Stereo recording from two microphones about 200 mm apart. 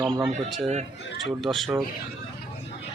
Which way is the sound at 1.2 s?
Centre (ahead or behind).